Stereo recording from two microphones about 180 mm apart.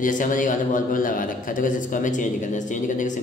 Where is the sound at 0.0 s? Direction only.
45° left (ahead or behind).